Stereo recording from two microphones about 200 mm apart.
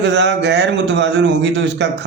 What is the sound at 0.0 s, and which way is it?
Speech, 60° right (ahead or behind).